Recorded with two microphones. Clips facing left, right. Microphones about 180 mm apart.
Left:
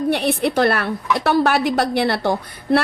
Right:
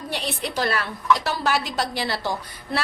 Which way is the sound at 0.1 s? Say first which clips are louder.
Left 7 dB; 60° left (ahead or behind).